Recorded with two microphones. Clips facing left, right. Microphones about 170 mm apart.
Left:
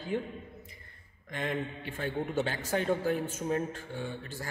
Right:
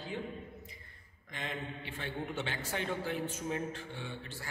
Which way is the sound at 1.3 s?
50° left (ahead or behind).